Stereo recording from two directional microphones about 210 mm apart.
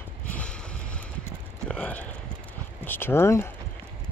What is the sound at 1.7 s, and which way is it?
Speech, 5° left (ahead or behind).